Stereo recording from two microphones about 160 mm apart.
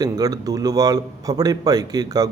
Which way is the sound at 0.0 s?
25° right (ahead or behind).